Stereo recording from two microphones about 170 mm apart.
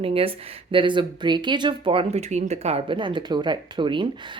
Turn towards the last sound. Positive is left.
turn(degrees=-30)  # may be behind; listen again after turning